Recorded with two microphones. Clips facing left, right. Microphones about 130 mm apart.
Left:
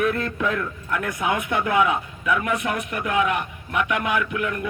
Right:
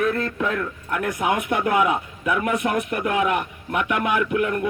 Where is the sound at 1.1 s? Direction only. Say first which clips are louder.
Right 3 dB; 50° right (ahead or behind).